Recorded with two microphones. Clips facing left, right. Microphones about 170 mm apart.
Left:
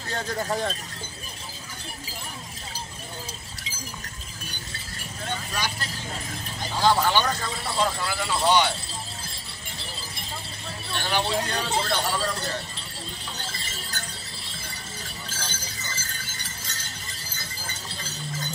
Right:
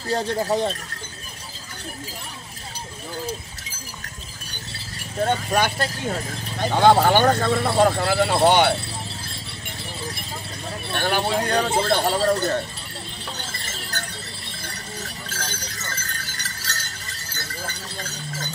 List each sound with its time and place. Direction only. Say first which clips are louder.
0.1 s speech: right 6 dB; 30° right (ahead or behind)
5.2 s speech: right 11 dB; 55° right (ahead or behind)
10.9 s speech: right 4 dB; 55° right (ahead or behind)
13.7 s a sound: right 4 dB; 65° right (ahead or behind)
15.2 s music: right 4 dB; 70° right (ahead or behind)
17.3 s clip-clop: right 8 dB; 65° right (ahead or behind)